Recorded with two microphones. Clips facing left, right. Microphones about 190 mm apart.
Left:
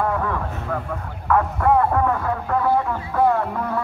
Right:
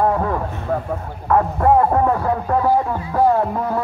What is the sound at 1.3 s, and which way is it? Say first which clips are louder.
A man's voice: right 3 dB; 30° right (ahead or behind).